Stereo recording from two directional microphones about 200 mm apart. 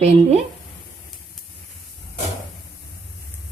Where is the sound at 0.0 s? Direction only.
30° right (ahead or behind).